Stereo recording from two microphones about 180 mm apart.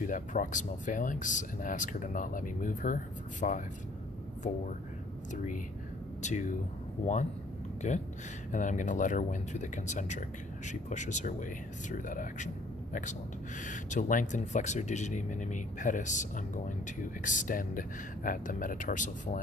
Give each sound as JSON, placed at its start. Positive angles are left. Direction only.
{"t": 0.0, "sound": "speech", "side_deg": 45}
{"t": 5.3, "sound": "speech", "side_deg": 40}
{"t": 7.8, "sound": "speech", "side_deg": 40}
{"t": 13.6, "sound": "speech", "side_deg": 45}